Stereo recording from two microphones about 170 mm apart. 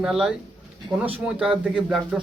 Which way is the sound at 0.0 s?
5° right (ahead or behind).